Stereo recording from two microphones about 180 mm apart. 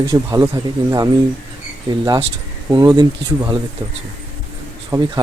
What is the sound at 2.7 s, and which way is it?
Speech, 20° right (ahead or behind).